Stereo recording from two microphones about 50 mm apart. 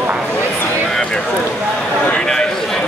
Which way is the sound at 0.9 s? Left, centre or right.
Centre.